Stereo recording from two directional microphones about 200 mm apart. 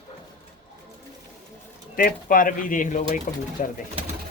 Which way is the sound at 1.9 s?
45° left (ahead or behind).